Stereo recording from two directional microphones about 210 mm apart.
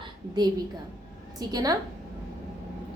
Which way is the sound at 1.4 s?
20° right (ahead or behind).